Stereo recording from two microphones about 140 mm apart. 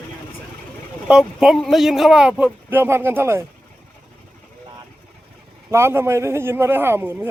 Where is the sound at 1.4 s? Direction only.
Centre (ahead or behind); by 3.4 s 20° right (ahead or behind).